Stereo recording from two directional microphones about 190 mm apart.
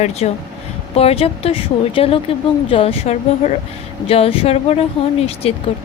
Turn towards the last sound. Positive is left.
turn(degrees=30)  # may be behind; listen again after turning